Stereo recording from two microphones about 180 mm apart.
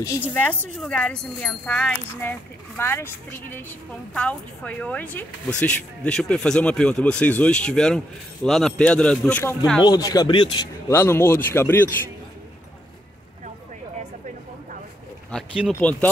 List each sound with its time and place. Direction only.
0.0 s speech: 15° left (ahead or behind)
9.8 s speech: 20° left (ahead or behind)
10.9 s speech: 15° left (ahead or behind)
15.3 s speech: 5° right (ahead or behind)
15.8 s speech: 10° left (ahead or behind)